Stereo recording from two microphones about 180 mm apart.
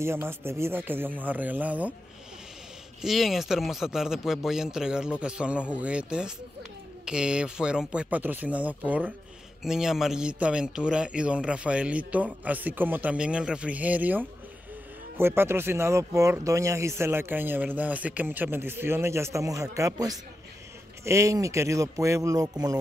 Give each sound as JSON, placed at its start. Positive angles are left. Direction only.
{"t": 0.0, "sound": "speech", "side_deg": -15}
{"t": 3.0, "sound": "speech", "side_deg": 0}